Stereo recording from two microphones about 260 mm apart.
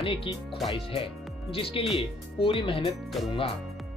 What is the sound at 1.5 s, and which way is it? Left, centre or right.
Speech, left.